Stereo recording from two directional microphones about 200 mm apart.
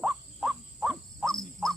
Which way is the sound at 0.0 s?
5° right (ahead or behind).